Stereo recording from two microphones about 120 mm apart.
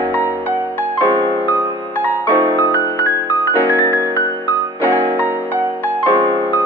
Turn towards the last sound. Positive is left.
turn(degrees=-15)  # may be behind; listen again after turning